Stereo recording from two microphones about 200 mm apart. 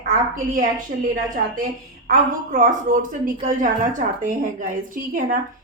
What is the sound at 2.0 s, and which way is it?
A woman's voice, 45° right (ahead or behind).